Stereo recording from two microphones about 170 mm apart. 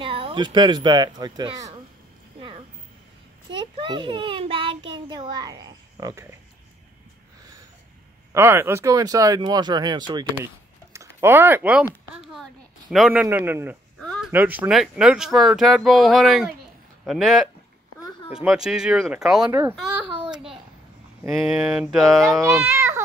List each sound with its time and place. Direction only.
0.0 s a child's voice: 30° right (ahead or behind)
3.5 s a child's voice: 25° right (ahead or behind)
8.3 s a child's voice: 15° right (ahead or behind)
10.3 s a sound: 15° right (ahead or behind)
12.9 s a man's voice: 5° right (ahead or behind)
13.9 s a sound: centre (ahead or behind)
14.3 s speech: 10° right (ahead or behind)
21.3 s speech: centre (ahead or behind)
22.4 s a man's voice: 15° right (ahead or behind)